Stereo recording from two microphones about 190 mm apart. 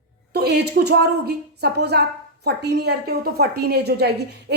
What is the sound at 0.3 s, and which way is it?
A woman's voice, 60° right (ahead or behind).